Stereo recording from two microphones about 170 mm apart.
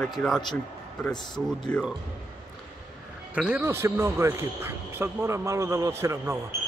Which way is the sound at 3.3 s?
5° right (ahead or behind).